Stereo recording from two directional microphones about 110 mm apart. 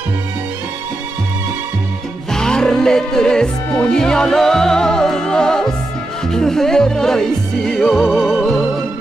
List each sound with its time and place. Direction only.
2.3 s music: 5° left (ahead or behind)